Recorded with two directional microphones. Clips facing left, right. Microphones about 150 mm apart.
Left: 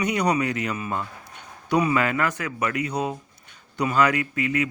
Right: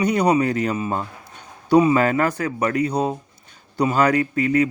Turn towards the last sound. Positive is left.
turn(degrees=-35)  # may be behind; listen again after turning